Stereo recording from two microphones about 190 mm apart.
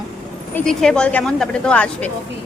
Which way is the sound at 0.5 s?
5° left (ahead or behind).